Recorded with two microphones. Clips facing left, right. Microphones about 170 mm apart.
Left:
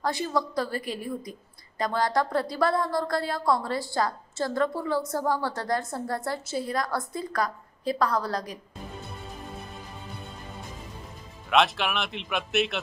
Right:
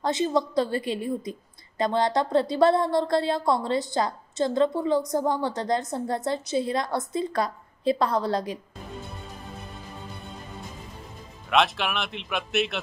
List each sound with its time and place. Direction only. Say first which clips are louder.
0.0 s a woman's voice: right 4 dB; 20° right (ahead or behind)
11.5 s speech: even; centre (ahead or behind)